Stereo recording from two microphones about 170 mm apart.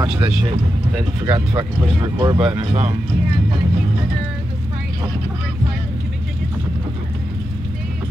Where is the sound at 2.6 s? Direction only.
40° right (ahead or behind).